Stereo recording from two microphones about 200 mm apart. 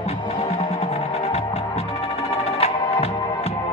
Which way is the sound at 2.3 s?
30° left (ahead or behind).